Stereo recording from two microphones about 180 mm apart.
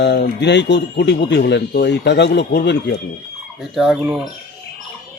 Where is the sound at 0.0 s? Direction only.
75° left (ahead or behind).